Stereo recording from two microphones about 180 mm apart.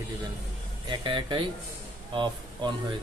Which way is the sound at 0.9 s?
25° right (ahead or behind).